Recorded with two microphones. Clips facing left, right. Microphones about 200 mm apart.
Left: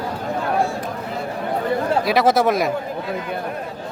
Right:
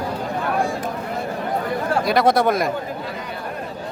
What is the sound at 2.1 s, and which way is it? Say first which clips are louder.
Speech: even; centre (ahead or behind).